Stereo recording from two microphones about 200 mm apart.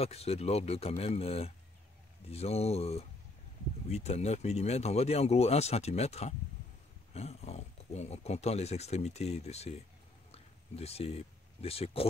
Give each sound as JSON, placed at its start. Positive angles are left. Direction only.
{"t": 0.0, "sound": "speech", "side_deg": 30}